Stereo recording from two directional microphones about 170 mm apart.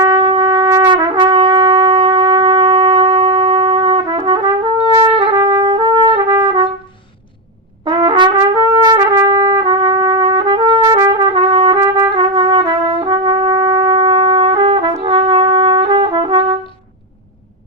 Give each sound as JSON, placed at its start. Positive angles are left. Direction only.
{"t": 0.0, "sound": "trumpet", "side_deg": -25}
{"t": 7.9, "sound": "trumpet", "side_deg": -25}
{"t": 15.0, "sound": "brass instrument", "side_deg": -30}